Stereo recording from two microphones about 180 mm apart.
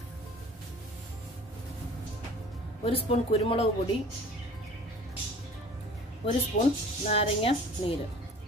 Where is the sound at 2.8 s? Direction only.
35° left (ahead or behind).